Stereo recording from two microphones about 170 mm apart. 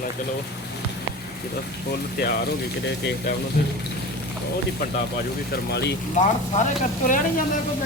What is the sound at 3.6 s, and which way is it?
Speech, 75° left (ahead or behind).